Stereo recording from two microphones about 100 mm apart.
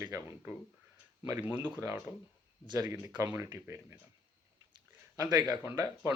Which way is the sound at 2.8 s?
35° right (ahead or behind).